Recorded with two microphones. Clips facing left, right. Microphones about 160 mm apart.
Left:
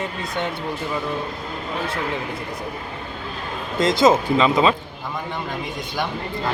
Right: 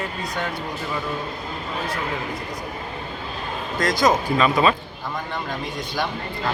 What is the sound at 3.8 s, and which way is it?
Speech, 25° left (ahead or behind).